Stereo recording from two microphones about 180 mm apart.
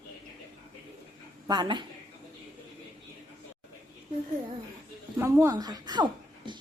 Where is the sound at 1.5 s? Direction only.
25° right (ahead or behind).